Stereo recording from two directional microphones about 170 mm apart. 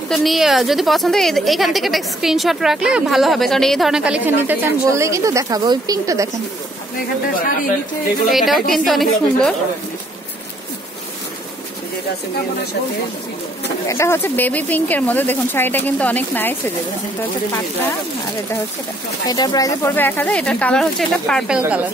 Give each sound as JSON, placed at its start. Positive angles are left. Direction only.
{"t": 0.1, "sound": "a woman's voice", "side_deg": 0}
{"t": 8.3, "sound": "a woman's voice", "side_deg": 0}
{"t": 13.8, "sound": "speech", "side_deg": 15}
{"t": 19.2, "sound": "speech", "side_deg": 25}